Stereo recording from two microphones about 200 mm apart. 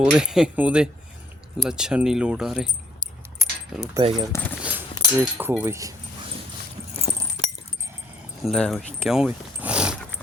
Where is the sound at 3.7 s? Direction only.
5° right (ahead or behind).